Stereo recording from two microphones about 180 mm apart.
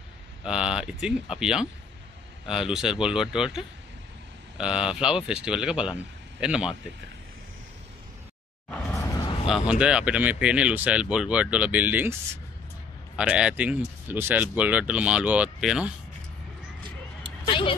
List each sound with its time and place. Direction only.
0.4 s speech: 5° right (ahead or behind)
8.6 s a sound: 10° left (ahead or behind); by 9.5 s 25° left (ahead or behind)
9.5 s speech: 5° right (ahead or behind)
17.5 s vehicle: 30° left (ahead or behind)